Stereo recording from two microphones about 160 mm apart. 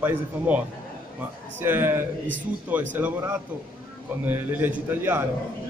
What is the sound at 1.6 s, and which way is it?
A man's voice, 10° right (ahead or behind).